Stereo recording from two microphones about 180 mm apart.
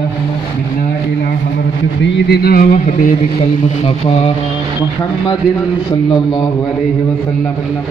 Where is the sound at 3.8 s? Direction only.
30° left (ahead or behind).